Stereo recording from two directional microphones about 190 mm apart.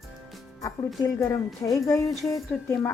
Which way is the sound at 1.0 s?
15° left (ahead or behind).